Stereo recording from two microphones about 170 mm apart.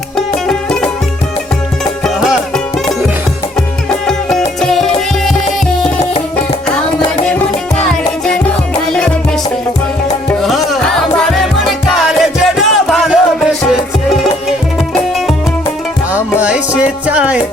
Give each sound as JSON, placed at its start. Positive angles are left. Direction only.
{"t": 0.4, "sound": "music", "side_deg": 5}
{"t": 3.8, "sound": "music", "side_deg": 5}
{"t": 7.3, "sound": "music", "side_deg": 5}
{"t": 10.2, "sound": "music", "side_deg": 0}
{"t": 16.1, "sound": "music", "side_deg": -10}